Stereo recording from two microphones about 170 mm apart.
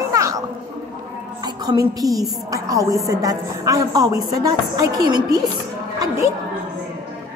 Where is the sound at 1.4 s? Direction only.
25° right (ahead or behind).